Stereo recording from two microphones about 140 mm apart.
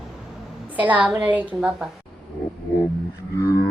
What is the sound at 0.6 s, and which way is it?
A woman's voice, 10° right (ahead or behind).